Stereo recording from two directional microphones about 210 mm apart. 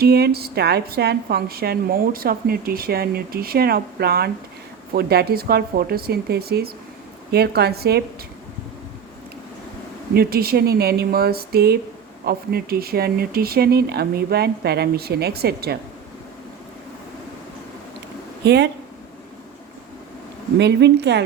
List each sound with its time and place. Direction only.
0.0 s a woman's voice: 50° right (ahead or behind)
10.2 s a woman's voice: 45° right (ahead or behind)
18.4 s a woman's voice: 55° right (ahead or behind)
20.6 s a woman's voice: 55° right (ahead or behind)